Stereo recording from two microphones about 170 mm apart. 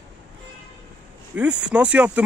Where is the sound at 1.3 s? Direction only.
10° right (ahead or behind).